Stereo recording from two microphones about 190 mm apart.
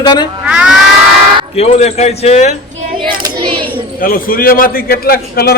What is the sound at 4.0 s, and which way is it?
A man's voice, 50° left (ahead or behind).